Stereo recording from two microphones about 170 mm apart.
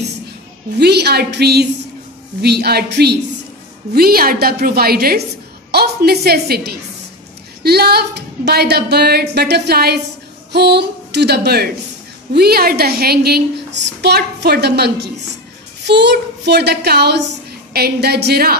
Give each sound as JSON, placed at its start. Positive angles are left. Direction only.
{"t": 0.7, "sound": "a woman's voice", "side_deg": -75}
{"t": 3.9, "sound": "a woman's voice", "side_deg": -65}
{"t": 15.8, "sound": "a woman's voice", "side_deg": -90}